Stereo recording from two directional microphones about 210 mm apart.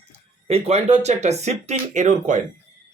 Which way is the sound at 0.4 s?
30° right (ahead or behind).